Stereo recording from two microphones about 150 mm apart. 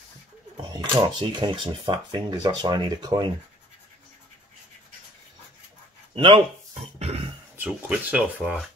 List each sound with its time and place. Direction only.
0.6 s speech: 30° right (ahead or behind)
6.1 s speech: 35° right (ahead or behind)
6.7 s a sound: 45° right (ahead or behind)
7.5 s speech: 10° right (ahead or behind)